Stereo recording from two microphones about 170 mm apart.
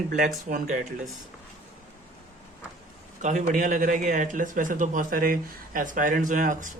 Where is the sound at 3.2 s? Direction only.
50° right (ahead or behind).